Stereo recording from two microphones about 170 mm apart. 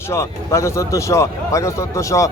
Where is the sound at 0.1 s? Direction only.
15° left (ahead or behind).